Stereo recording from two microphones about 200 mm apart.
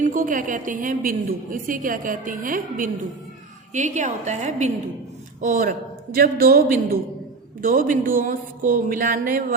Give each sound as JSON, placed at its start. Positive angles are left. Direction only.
{"t": 0.0, "sound": "a woman's voice", "side_deg": -45}